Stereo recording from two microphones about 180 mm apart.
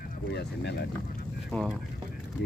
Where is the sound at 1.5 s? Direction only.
5° left (ahead or behind).